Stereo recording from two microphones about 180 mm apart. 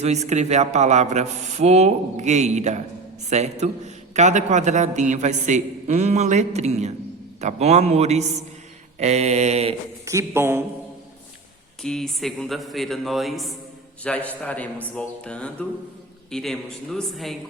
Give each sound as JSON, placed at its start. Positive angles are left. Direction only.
{"t": 0.0, "sound": "a man's voice", "side_deg": -40}
{"t": 10.1, "sound": "speech", "side_deg": -15}
{"t": 11.8, "sound": "a man's voice", "side_deg": 0}